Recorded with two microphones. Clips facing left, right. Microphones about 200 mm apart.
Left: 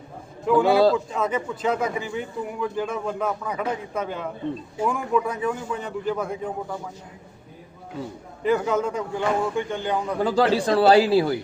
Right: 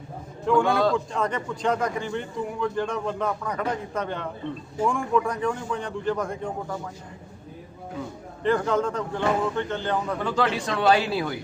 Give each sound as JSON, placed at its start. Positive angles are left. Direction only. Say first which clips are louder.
{"t": 0.4, "sound": "a man's voice", "louder": "left 4 dB", "side_deg": 5}
{"t": 8.4, "sound": "speech", "louder": "left 1 dB", "side_deg": 10}
{"t": 10.2, "sound": "a man's voice", "louder": "left 5 dB", "side_deg": 35}